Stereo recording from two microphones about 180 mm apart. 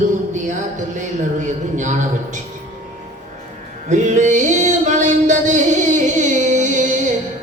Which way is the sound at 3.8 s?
40° right (ahead or behind).